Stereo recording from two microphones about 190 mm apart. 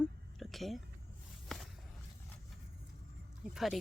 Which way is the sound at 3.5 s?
Centre (ahead or behind).